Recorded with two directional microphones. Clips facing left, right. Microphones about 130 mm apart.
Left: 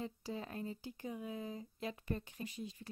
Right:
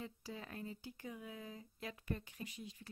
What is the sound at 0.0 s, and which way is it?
Speech, 30° left (ahead or behind).